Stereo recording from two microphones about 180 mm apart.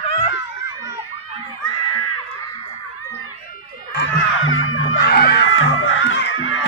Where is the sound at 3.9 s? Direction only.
90° left.